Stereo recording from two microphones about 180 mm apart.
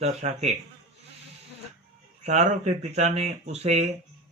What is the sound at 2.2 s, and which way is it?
Speech, 40° right (ahead or behind).